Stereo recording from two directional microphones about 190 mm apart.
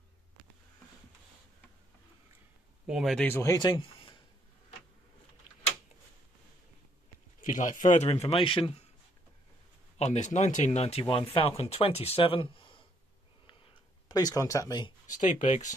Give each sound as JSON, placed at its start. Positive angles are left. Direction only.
{"t": 2.9, "sound": "speech", "side_deg": 0}
{"t": 7.4, "sound": "speech", "side_deg": 40}
{"t": 9.9, "sound": "speech", "side_deg": 35}
{"t": 14.0, "sound": "speech", "side_deg": 20}
{"t": 15.0, "sound": "speech", "side_deg": 40}